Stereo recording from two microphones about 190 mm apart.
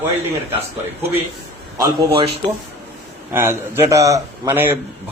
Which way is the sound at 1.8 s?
30° right (ahead or behind).